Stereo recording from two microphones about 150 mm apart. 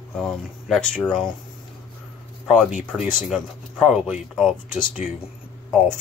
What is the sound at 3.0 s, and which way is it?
Speech, 60° left (ahead or behind).